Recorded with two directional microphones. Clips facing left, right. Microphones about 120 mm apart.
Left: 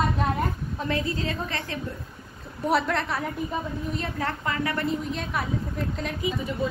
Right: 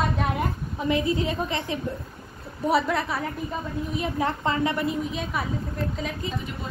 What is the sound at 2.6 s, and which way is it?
A woman's voice, centre (ahead or behind).